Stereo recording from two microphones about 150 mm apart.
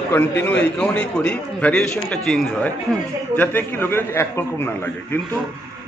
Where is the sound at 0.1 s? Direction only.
15° left (ahead or behind).